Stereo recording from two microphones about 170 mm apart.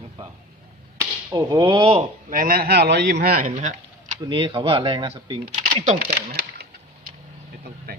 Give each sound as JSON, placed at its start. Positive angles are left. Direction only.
{"t": 1.3, "sound": "speech", "side_deg": -25}
{"t": 2.3, "sound": "a man's voice", "side_deg": -55}
{"t": 4.3, "sound": "speech", "side_deg": -30}
{"t": 5.5, "sound": "speech", "side_deg": -50}